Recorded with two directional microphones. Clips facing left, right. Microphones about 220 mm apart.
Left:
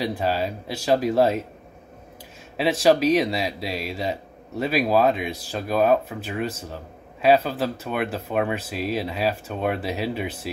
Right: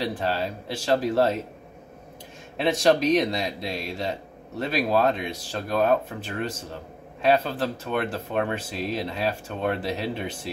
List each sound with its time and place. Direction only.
0.0 s speech: 10° left (ahead or behind)
2.5 s speech: 5° left (ahead or behind)